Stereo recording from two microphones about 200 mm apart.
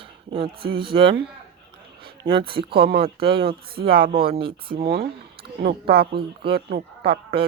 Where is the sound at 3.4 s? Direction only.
50° right (ahead or behind).